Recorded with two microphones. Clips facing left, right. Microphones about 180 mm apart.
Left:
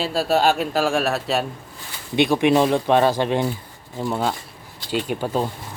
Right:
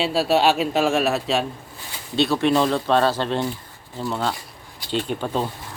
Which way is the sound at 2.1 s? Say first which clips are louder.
Left 2 dB; 15° left (ahead or behind).